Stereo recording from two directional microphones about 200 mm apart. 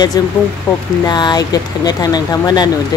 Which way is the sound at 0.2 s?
20° left (ahead or behind).